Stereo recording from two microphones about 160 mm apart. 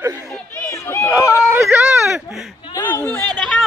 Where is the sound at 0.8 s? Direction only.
15° left (ahead or behind).